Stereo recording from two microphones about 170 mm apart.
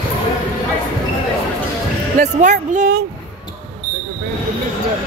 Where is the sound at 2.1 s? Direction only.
45° right (ahead or behind).